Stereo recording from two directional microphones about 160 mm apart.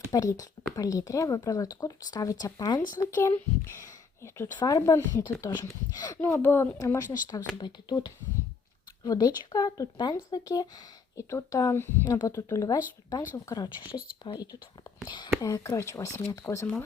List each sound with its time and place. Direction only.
0.1 s speech: 20° left (ahead or behind)